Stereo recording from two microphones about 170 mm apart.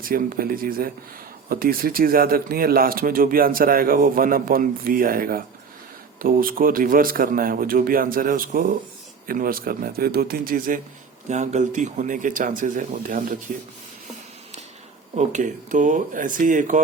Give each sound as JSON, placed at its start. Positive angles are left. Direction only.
{"t": 0.0, "sound": "speech", "side_deg": -55}
{"t": 11.3, "sound": "speech", "side_deg": -45}
{"t": 15.1, "sound": "speech", "side_deg": -45}